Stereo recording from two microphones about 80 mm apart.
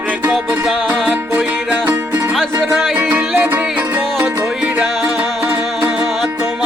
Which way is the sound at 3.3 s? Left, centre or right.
Right.